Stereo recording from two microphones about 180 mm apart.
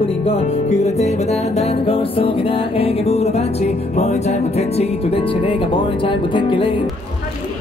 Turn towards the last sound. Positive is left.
turn(degrees=25)  # may be behind; listen again after turning